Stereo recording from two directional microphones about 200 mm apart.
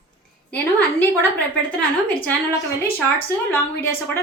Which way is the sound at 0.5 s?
5° left (ahead or behind).